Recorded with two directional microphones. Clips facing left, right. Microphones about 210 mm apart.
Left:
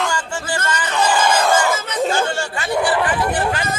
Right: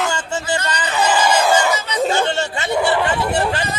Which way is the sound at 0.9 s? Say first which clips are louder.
Right 1 dB; 5° right (ahead or behind).